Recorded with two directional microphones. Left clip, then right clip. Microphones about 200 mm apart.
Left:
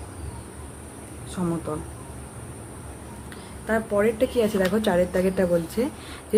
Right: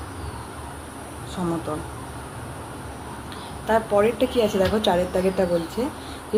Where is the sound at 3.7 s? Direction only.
10° left (ahead or behind).